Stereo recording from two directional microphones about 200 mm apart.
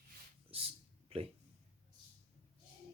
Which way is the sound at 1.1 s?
30° right (ahead or behind).